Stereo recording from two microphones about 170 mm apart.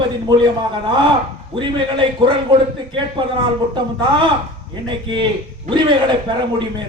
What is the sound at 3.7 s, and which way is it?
A man's voice, 30° right (ahead or behind).